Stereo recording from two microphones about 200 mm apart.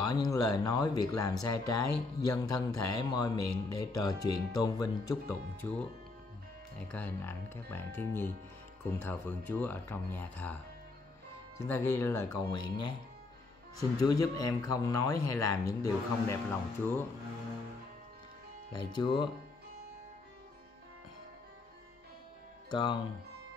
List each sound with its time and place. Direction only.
0.0 s speech: 20° left (ahead or behind)
18.7 s speech: 20° left (ahead or behind)
22.7 s speech: 25° left (ahead or behind)